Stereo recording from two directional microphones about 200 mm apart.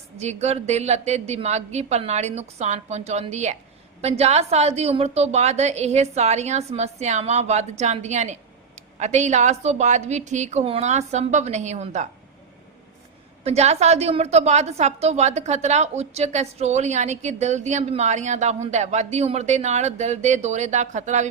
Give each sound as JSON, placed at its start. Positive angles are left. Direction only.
{"t": 0.2, "sound": "a woman's voice", "side_deg": -35}
{"t": 13.4, "sound": "a woman's voice", "side_deg": -30}